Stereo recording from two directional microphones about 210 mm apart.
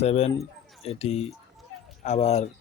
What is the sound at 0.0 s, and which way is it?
Speech, 30° left (ahead or behind).